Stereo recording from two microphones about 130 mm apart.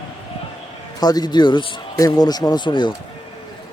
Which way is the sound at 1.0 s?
30° left (ahead or behind).